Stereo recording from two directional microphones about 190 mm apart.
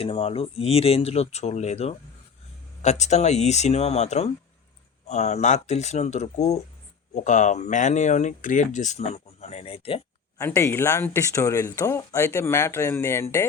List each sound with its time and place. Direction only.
0.0 s speech: 30° left (ahead or behind)
10.3 s speech: 15° left (ahead or behind)